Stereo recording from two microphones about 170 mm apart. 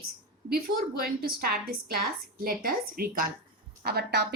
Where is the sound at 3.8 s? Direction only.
70° right (ahead or behind).